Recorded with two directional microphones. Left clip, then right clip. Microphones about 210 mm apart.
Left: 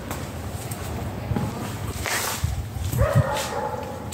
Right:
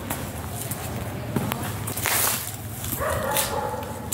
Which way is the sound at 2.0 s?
60° right (ahead or behind).